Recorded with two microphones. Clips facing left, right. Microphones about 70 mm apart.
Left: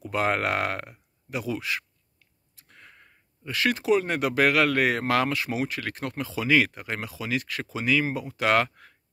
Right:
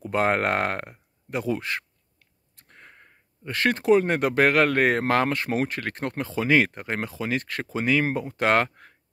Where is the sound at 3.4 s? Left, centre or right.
Right.